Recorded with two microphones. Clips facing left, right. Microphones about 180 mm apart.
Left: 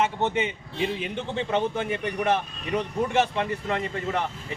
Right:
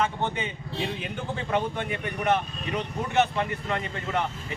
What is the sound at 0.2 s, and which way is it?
Speech, 25° left (ahead or behind).